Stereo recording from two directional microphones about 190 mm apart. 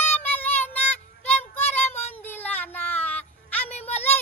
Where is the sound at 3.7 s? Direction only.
35° left (ahead or behind).